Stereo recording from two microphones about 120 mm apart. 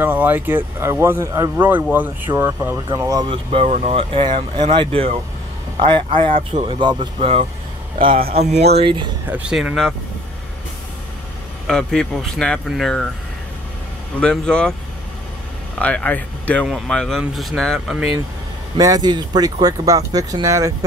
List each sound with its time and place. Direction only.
0.0 s speech: 15° right (ahead or behind)
1.6 s speech: 15° right (ahead or behind)
3.3 s speech: 55° right (ahead or behind)
8.5 s speech: 65° right (ahead or behind)
8.8 s speech: 40° right (ahead or behind)
9.3 s speech: 10° right (ahead or behind)
11.6 s speech: 5° left (ahead or behind)
14.2 s speech: 5° left (ahead or behind)
15.8 s speech: 10° left (ahead or behind)
16.6 s speech: 5° right (ahead or behind)
18.8 s speech: 30° right (ahead or behind)